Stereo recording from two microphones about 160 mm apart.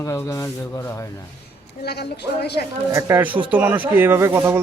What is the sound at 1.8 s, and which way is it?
Speech, 90° left.